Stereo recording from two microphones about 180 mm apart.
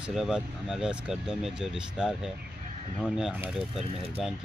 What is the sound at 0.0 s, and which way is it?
Speech, 5° right (ahead or behind).